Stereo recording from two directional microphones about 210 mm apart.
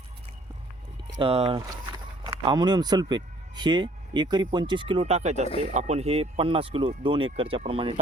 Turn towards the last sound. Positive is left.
turn(degrees=-25)  # may be behind; listen again after turning